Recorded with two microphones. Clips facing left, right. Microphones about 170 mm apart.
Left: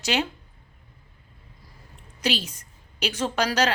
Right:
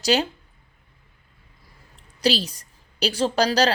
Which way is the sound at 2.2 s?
35° right (ahead or behind).